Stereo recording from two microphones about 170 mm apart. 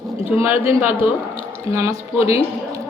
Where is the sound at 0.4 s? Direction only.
10° right (ahead or behind).